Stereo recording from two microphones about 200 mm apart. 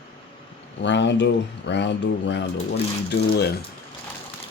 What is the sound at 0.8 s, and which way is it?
Speech, 60° left (ahead or behind).